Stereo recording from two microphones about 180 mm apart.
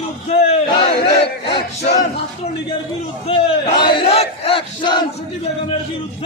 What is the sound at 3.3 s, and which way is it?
Battle cry, 30° left (ahead or behind).